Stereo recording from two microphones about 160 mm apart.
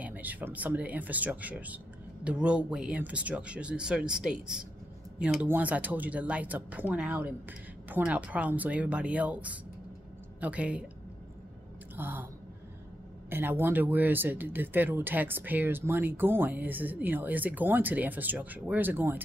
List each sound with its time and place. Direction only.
0.0 s speech: 10° right (ahead or behind)
11.9 s speech: 10° right (ahead or behind)
13.3 s speech: 15° right (ahead or behind)